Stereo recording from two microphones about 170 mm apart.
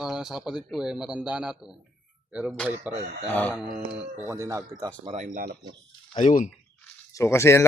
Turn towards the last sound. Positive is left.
turn(degrees=15)  # may be behind; listen again after turning